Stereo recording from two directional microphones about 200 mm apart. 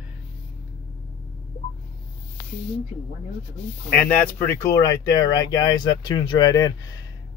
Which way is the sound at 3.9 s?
10° left (ahead or behind).